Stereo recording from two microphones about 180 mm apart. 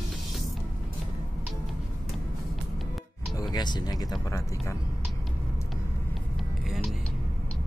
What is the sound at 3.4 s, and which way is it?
Music, 20° left (ahead or behind).